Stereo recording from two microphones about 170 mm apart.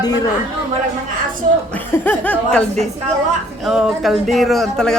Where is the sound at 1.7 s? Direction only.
10° left (ahead or behind).